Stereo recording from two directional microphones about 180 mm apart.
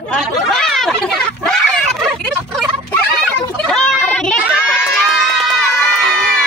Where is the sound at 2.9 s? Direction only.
5° left (ahead or behind).